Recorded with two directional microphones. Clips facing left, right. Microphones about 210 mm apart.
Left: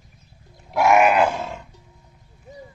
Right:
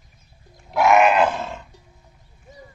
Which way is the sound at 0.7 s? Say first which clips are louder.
Even; 10° left (ahead or behind).